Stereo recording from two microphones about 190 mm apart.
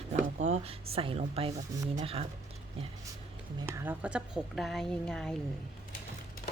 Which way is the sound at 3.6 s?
10° right (ahead or behind).